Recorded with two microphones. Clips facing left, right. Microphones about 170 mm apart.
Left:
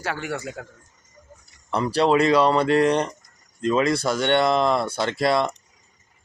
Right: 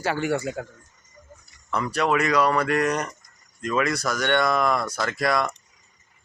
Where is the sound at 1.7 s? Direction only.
30° left (ahead or behind).